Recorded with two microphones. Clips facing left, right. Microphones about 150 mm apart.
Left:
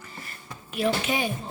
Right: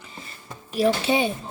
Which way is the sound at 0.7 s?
35° right (ahead or behind).